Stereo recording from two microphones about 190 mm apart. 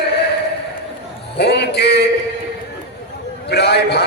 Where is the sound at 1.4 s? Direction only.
60° left (ahead or behind).